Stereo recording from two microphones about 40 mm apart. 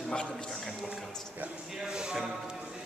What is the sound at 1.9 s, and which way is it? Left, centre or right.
Speech, centre.